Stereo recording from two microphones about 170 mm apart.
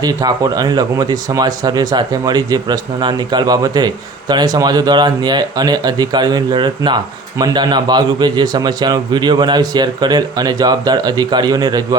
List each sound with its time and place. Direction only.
0.0 s speech: 20° right (ahead or behind)